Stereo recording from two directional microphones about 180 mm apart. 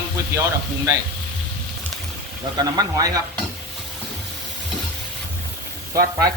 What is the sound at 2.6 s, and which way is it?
Speech, 20° right (ahead or behind).